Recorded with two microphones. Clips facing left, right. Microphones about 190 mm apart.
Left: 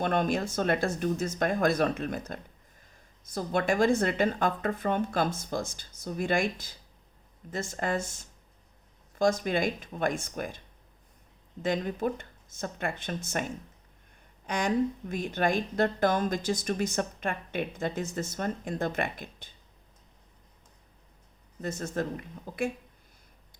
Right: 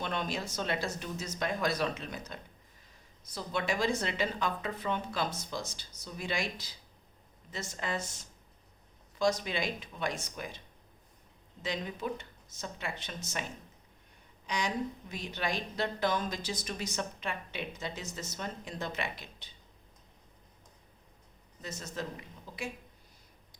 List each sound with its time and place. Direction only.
0.0 s speech: 50° left (ahead or behind)
11.6 s speech: 50° left (ahead or behind)
14.4 s speech: 50° left (ahead or behind)
21.6 s speech: 50° left (ahead or behind)